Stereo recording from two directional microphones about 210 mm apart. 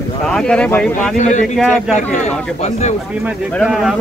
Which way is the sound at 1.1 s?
35° left (ahead or behind).